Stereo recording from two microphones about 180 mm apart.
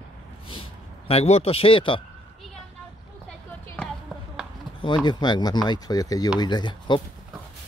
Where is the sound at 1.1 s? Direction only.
35° left (ahead or behind).